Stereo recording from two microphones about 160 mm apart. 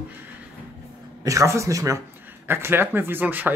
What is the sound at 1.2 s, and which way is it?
Speech, 20° right (ahead or behind).